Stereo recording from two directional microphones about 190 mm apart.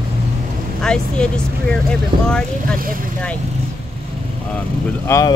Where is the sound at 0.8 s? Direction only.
5° left (ahead or behind).